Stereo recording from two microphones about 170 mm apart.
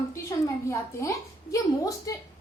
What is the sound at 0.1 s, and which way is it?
A woman's voice, 15° left (ahead or behind).